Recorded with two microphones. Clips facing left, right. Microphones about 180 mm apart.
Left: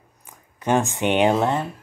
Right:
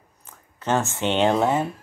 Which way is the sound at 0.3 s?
15° left (ahead or behind).